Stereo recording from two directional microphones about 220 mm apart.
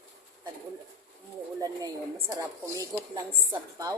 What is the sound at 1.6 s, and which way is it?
A woman's voice, 15° right (ahead or behind).